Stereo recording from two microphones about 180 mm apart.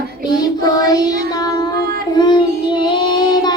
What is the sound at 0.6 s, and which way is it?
Child singing, 20° left (ahead or behind).